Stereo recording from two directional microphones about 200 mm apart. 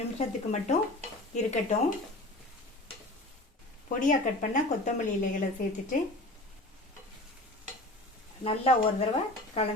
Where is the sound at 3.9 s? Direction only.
40° left (ahead or behind).